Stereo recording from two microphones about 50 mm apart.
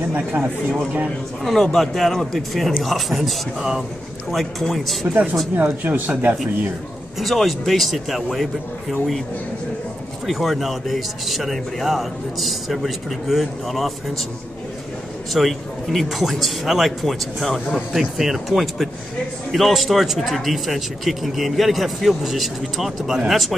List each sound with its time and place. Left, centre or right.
1.4 s a man's voice: centre
3.2 s speech: centre
4.3 s a man's voice: centre
5.0 s speech: right
7.2 s a man's voice: centre
10.2 s a man's voice: centre
15.3 s a man's voice: centre